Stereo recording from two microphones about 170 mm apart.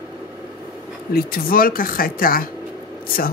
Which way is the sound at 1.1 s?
60° left (ahead or behind).